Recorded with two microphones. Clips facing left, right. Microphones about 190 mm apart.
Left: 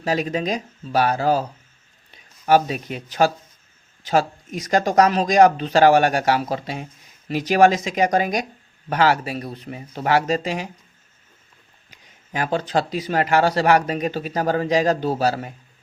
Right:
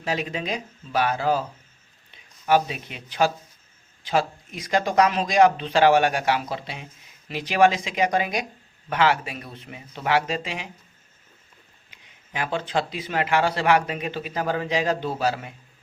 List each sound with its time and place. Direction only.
0.0 s speech: 40° left (ahead or behind)
2.5 s speech: 40° left (ahead or behind)
11.9 s speech: 40° left (ahead or behind)